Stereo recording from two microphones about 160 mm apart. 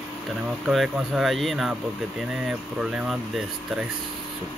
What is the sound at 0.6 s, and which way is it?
Speech, centre (ahead or behind).